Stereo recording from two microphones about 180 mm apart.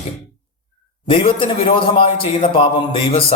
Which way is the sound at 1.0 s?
30° left (ahead or behind).